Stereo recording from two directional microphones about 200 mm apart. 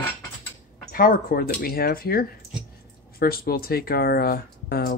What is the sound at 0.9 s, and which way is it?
Speech, 45° left (ahead or behind).